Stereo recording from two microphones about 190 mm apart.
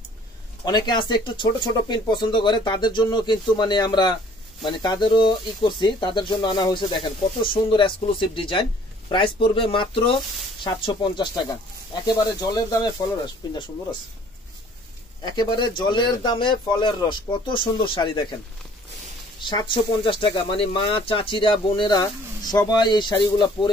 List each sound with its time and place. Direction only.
0.7 s speech: 20° left (ahead or behind)
15.2 s speech: 25° left (ahead or behind)
19.4 s speech: 25° left (ahead or behind)